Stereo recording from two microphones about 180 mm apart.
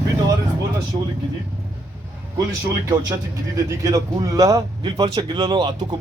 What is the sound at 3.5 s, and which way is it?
A man's voice, 20° right (ahead or behind).